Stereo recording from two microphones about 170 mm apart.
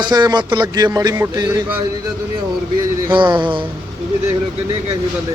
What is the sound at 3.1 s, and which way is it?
Speech, 30° right (ahead or behind).